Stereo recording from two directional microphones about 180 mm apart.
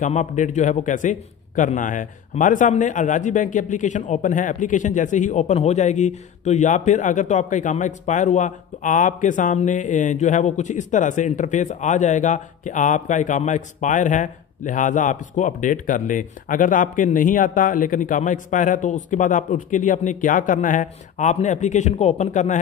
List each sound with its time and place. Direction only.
0.0 s a man's voice: 40° left (ahead or behind)